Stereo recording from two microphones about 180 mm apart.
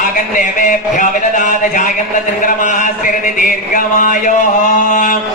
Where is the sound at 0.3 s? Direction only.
45° left (ahead or behind).